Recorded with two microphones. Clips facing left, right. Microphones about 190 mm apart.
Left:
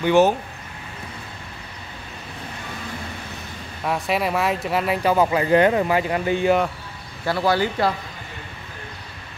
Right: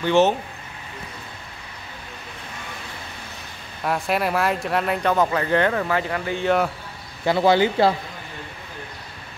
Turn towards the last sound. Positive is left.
turn(degrees=-25)  # may be behind; listen again after turning